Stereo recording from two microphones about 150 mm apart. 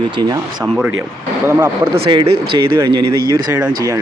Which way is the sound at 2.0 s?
35° right (ahead or behind).